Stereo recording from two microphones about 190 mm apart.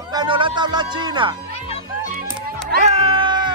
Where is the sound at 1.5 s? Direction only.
30° left (ahead or behind).